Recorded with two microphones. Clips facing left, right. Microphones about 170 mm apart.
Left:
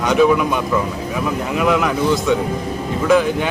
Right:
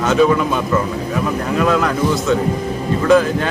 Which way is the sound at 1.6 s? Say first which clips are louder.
Right 1 dB; 15° left (ahead or behind).